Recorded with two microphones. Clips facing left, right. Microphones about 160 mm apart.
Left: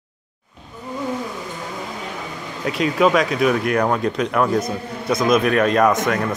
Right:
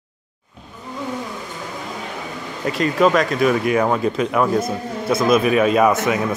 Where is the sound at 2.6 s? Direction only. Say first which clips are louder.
Right 1 dB; centre (ahead or behind).